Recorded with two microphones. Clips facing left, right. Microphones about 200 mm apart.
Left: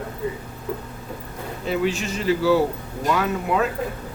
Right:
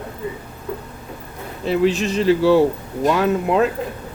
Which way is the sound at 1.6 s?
35° right (ahead or behind).